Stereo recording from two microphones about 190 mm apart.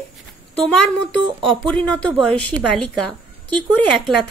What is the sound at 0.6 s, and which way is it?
A woman's voice, 5° left (ahead or behind).